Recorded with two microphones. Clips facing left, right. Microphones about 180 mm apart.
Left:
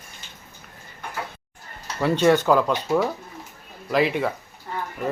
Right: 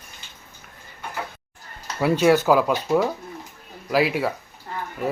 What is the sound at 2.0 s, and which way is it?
Speech, 10° right (ahead or behind).